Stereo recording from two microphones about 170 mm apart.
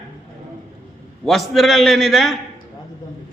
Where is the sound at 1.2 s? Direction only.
Centre (ahead or behind).